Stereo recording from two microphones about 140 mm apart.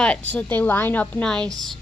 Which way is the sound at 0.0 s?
10° left (ahead or behind).